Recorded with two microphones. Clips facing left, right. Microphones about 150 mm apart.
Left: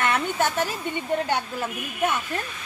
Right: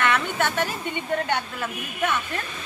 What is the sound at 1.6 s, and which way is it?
Speech, 30° left (ahead or behind).